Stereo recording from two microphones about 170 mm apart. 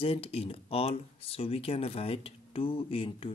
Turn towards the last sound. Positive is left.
turn(degrees=35)  # may be behind; listen again after turning